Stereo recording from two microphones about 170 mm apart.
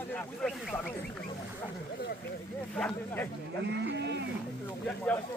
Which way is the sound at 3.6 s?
90° right.